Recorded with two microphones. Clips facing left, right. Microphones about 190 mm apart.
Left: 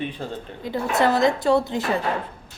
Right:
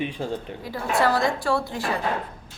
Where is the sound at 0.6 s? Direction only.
20° left (ahead or behind).